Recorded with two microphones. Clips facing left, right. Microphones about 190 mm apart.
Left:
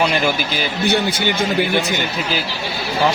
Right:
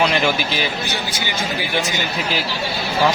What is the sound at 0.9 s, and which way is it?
Speech, 60° left (ahead or behind).